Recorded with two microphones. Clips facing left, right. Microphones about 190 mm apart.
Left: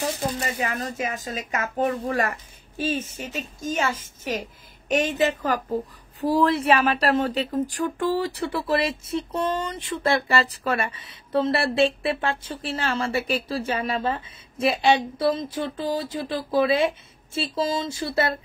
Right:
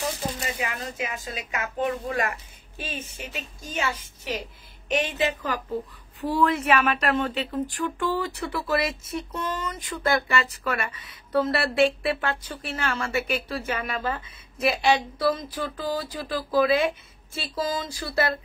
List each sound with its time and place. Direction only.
0.6 s a woman's voice: 40° left (ahead or behind); by 18.3 s 25° left (ahead or behind)